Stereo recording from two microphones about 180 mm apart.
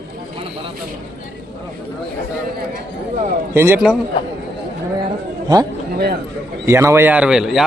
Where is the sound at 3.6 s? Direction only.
10° right (ahead or behind).